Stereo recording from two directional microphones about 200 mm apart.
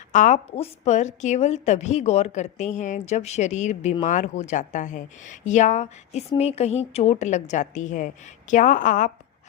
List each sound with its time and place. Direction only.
0.1 s a woman's voice: 35° left (ahead or behind)